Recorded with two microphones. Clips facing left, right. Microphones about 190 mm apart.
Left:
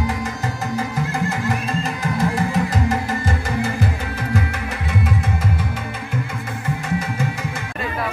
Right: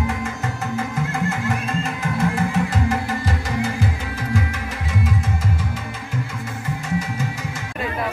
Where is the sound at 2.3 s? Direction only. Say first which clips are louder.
Left 1 dB; 40° left (ahead or behind).